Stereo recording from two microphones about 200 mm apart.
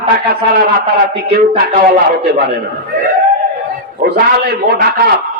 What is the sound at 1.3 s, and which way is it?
Speech, 50° right (ahead or behind).